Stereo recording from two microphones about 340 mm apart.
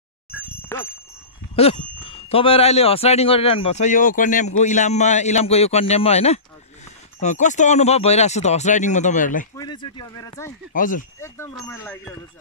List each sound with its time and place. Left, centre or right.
1.5 s speech: centre
10.7 s speech: left
11.1 s speech: centre